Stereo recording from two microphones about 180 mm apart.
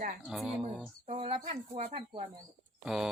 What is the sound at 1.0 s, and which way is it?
Speech, 30° right (ahead or behind).